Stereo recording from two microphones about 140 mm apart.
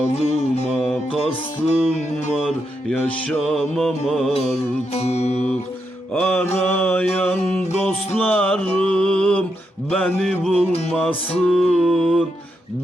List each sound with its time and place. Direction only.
0.1 s music: 50° left (ahead or behind)
0.8 s music: 5° left (ahead or behind)
1.2 s music: 50° left (ahead or behind)
3.0 s music: 10° left (ahead or behind)
4.3 s music: 50° left (ahead or behind)
6.1 s mantra: 10° left (ahead or behind)
10.7 s music: 50° left (ahead or behind)
11.3 s music: 5° left (ahead or behind)